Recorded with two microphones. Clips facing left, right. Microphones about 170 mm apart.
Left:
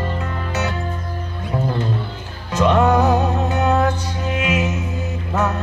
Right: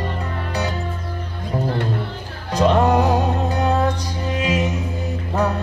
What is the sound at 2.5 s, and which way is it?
Music, 35° right (ahead or behind).